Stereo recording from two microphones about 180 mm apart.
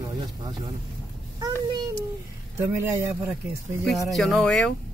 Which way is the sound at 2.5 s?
15° right (ahead or behind).